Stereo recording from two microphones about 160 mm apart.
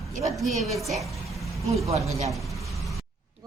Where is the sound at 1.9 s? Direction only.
40° right (ahead or behind).